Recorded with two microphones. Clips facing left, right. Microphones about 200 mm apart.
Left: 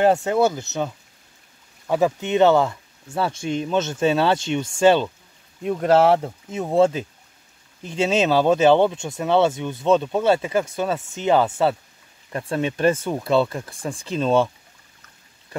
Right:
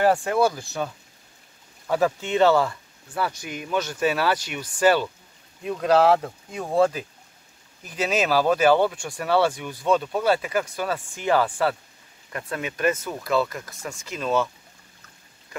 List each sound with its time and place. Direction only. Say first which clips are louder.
0.0 s speech: left 3 dB; 25° left (ahead or behind)